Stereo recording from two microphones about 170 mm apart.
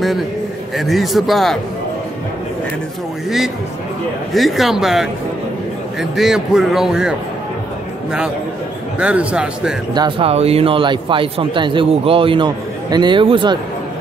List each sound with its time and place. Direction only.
0.7 s a man's voice: centre (ahead or behind)
4.3 s a man's voice: centre (ahead or behind)
9.0 s speech: 5° right (ahead or behind)
9.9 s speech: 30° right (ahead or behind)